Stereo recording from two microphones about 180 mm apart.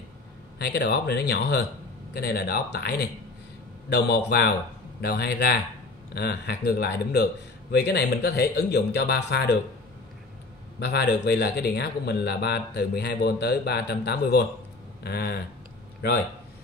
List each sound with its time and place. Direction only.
0.6 s speech: 70° left (ahead or behind)
10.8 s a man's voice: 65° left (ahead or behind)